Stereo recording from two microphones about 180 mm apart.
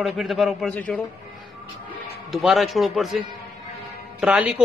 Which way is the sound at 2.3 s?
Centre (ahead or behind).